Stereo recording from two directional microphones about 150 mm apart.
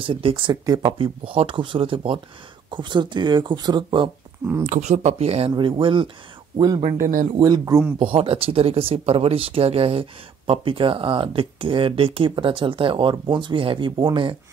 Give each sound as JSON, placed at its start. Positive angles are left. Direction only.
{"t": 0.0, "sound": "speech", "side_deg": -35}
{"t": 4.6, "sound": "speech", "side_deg": -50}
{"t": 8.0, "sound": "speech", "side_deg": -40}